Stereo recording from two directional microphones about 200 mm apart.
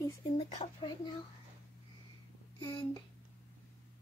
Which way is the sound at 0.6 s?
25° left (ahead or behind).